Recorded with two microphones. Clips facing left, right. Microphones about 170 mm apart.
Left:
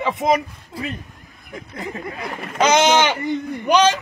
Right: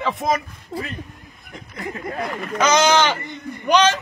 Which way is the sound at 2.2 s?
25° left (ahead or behind).